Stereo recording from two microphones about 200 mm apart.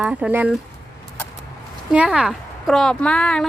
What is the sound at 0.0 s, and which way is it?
Speech, 5° right (ahead or behind).